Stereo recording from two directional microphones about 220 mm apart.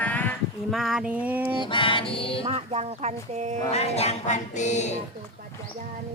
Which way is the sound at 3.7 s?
30° left (ahead or behind).